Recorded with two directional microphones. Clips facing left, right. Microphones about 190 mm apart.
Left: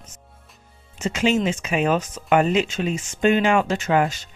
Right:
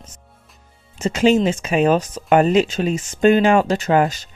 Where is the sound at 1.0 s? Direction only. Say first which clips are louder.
Right 5 dB; 35° right (ahead or behind).